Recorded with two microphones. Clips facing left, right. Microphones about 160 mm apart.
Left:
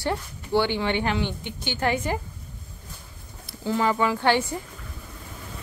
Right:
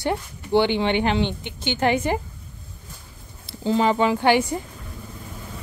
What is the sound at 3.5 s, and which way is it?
A woman's voice, 25° right (ahead or behind).